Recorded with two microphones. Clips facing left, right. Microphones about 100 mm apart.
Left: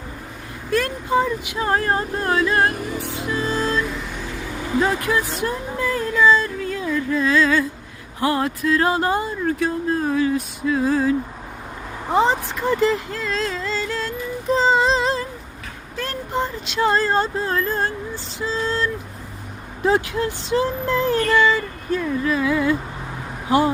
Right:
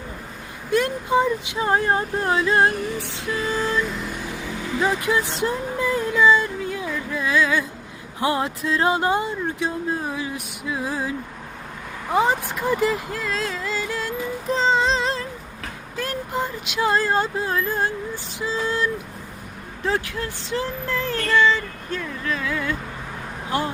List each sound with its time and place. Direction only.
0.7 s speech: 15° right (ahead or behind)
4.9 s speech: 20° right (ahead or behind)
12.1 s speech: 5° right (ahead or behind)
14.5 s a sound: 5° left (ahead or behind)
16.0 s speech: 5° right (ahead or behind)
19.8 s speech: 15° left (ahead or behind)